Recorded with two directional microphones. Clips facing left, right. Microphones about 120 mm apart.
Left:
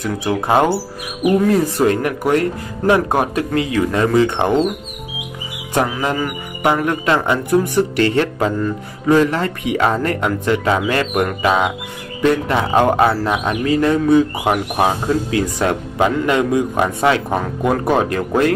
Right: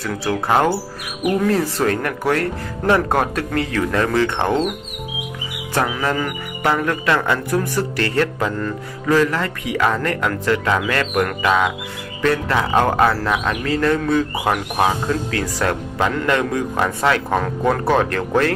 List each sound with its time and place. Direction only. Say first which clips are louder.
0.0 s speech: left 2 dB; 20° left (ahead or behind)
5.9 s speech: left 1 dB; 10° left (ahead or behind)